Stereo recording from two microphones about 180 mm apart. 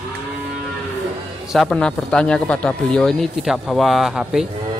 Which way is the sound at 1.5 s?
Centre (ahead or behind).